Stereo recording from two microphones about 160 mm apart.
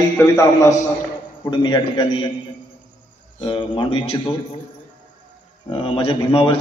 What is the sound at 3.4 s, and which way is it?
Speech, 30° left (ahead or behind).